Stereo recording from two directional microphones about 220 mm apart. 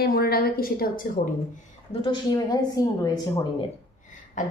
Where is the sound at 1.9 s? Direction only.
25° left (ahead or behind).